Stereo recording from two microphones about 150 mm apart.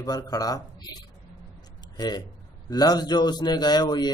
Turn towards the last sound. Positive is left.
turn(degrees=25)  # may be behind; listen again after turning